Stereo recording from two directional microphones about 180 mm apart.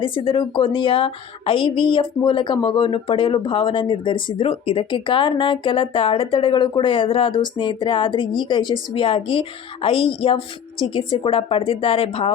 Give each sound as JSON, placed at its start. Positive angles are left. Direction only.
{"t": 0.0, "sound": "speech", "side_deg": 30}